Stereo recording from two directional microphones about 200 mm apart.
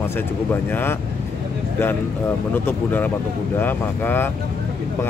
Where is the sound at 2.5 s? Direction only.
10° left (ahead or behind).